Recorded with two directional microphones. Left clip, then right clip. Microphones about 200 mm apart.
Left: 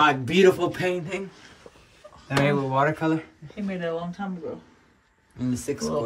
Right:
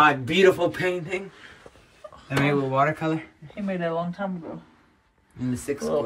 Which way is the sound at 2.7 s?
60° left (ahead or behind).